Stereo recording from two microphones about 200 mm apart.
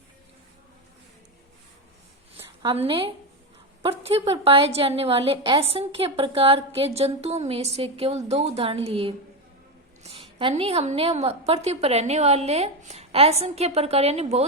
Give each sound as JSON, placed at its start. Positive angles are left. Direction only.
{"t": 2.6, "sound": "a woman's voice", "side_deg": -25}